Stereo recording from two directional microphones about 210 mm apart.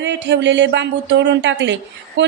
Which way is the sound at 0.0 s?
55° right (ahead or behind).